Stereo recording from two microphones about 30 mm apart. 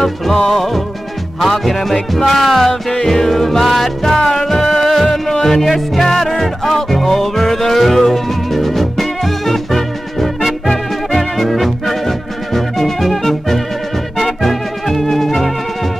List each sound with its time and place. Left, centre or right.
0.0 s music: centre
4.2 s music: centre
10.7 s music: centre
14.2 s organ: centre